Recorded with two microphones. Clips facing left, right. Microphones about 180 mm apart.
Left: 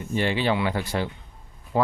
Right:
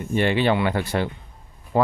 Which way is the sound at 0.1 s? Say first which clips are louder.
Right 4 dB; 60° right (ahead or behind).